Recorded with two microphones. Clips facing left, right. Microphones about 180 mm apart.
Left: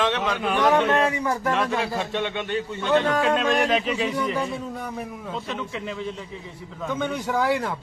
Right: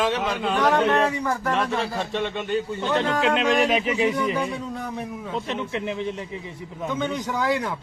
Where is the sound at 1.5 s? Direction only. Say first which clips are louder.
Even; centre (ahead or behind).